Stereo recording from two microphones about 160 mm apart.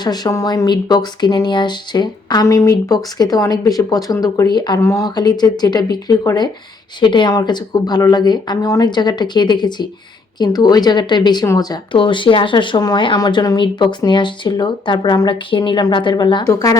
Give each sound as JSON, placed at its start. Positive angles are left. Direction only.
{"t": 0.0, "sound": "speech", "side_deg": 25}